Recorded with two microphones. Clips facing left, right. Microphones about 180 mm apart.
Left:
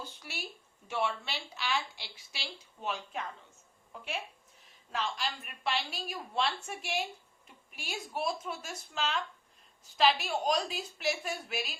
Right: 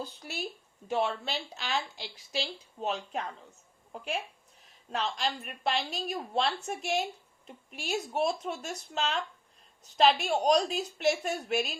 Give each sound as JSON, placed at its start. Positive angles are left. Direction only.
{"t": 0.0, "sound": "a woman's voice", "side_deg": -40}
{"t": 10.2, "sound": "a woman's voice", "side_deg": -40}